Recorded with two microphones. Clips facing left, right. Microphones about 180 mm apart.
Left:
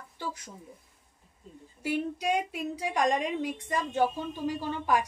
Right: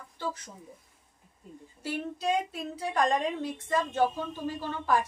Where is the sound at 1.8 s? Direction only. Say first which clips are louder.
Left 3 dB; 15° left (ahead or behind).